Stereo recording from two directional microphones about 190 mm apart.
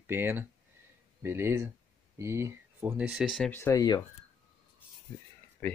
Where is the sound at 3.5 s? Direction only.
10° left (ahead or behind).